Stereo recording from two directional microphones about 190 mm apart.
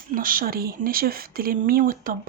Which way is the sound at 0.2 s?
50° right (ahead or behind).